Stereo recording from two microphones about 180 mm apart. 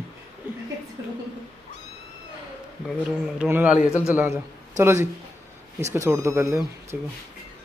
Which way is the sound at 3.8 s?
15° left (ahead or behind).